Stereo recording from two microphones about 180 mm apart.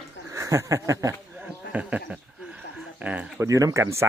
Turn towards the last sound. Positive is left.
turn(degrees=-15)  # may be behind; listen again after turning